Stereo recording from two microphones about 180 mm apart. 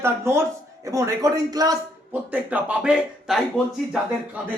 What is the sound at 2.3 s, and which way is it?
A man's voice, 10° right (ahead or behind).